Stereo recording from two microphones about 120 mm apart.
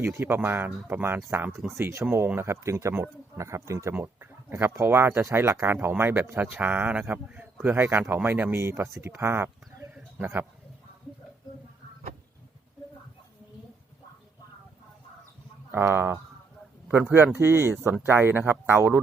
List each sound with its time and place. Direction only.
0.0 s speech: 20° right (ahead or behind)
9.9 s bird: 15° right (ahead or behind)
15.7 s speech: 20° right (ahead or behind)